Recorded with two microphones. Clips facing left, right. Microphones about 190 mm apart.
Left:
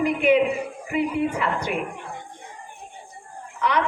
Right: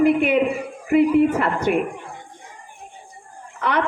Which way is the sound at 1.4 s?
45° right (ahead or behind).